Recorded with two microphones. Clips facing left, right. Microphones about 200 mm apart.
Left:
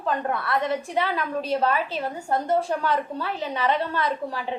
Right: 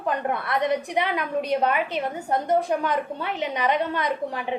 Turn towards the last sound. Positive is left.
turn(degrees=-15)  # may be behind; listen again after turning